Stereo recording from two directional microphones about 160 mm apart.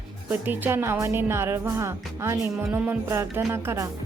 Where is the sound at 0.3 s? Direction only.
10° right (ahead or behind).